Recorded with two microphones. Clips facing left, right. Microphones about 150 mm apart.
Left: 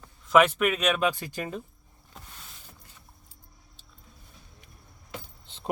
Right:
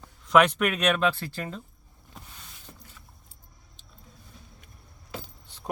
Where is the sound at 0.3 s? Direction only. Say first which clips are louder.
Even; centre (ahead or behind).